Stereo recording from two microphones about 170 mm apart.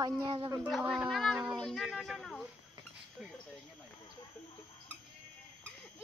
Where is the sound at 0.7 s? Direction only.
5° right (ahead or behind).